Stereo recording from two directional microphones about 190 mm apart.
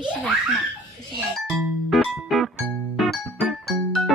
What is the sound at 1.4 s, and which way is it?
Music, centre (ahead or behind).